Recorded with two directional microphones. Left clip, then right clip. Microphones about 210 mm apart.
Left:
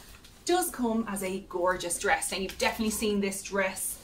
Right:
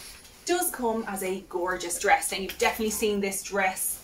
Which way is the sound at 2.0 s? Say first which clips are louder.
Right 4 dB; 20° left (ahead or behind).